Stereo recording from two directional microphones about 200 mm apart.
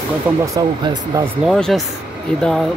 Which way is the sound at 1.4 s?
Centre (ahead or behind).